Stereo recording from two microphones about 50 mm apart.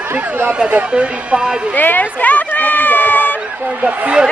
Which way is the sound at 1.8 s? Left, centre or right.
Left.